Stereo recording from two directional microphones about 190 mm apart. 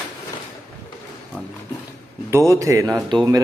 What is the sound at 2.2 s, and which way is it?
A man's voice, 15° right (ahead or behind).